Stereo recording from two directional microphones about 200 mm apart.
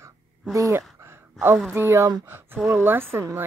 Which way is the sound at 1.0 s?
10° right (ahead or behind).